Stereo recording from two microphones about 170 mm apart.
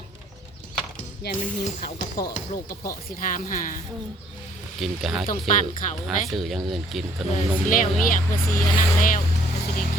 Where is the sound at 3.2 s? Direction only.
50° left (ahead or behind).